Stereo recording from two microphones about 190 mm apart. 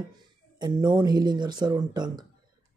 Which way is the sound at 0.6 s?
20° right (ahead or behind).